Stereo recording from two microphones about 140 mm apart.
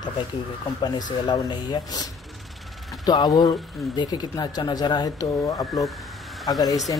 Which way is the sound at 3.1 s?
30° left (ahead or behind).